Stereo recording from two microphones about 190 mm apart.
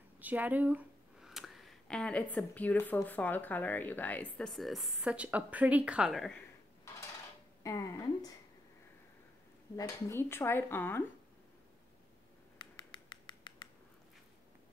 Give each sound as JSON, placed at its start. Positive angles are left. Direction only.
{"t": 0.2, "sound": "speech", "side_deg": -10}
{"t": 7.6, "sound": "speech", "side_deg": 20}
{"t": 9.8, "sound": "speech", "side_deg": 15}
{"t": 12.5, "sound": "a sound", "side_deg": 25}